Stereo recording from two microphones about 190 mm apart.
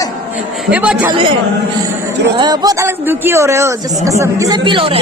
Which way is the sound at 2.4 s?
20° right (ahead or behind).